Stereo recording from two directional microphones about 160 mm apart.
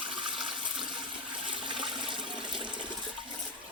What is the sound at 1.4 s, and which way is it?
Toilet flush, 35° right (ahead or behind).